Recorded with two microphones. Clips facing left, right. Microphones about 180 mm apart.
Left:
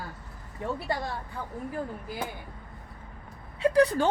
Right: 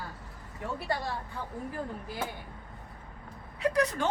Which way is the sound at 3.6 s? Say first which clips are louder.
Left 6 dB; 30° left (ahead or behind).